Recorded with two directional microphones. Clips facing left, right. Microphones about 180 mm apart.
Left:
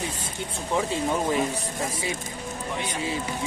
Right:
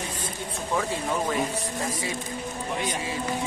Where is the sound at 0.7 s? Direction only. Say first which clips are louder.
Left 2 dB; 20° left (ahead or behind).